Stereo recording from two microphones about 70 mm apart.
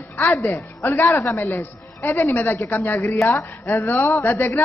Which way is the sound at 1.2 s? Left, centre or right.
Left.